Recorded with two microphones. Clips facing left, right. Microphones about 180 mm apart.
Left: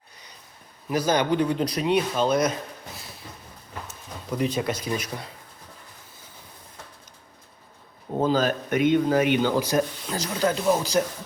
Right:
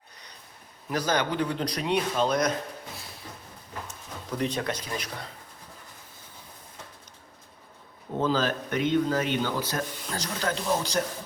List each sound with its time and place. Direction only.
0.9 s speech: 10° left (ahead or behind)
4.4 s speech: 10° left (ahead or behind)
8.2 s speech: 45° left (ahead or behind)
8.4 s speech: 15° left (ahead or behind)